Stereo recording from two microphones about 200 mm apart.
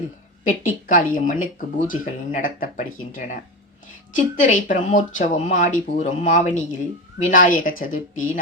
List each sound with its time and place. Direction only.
0.4 s speech: 40° left (ahead or behind)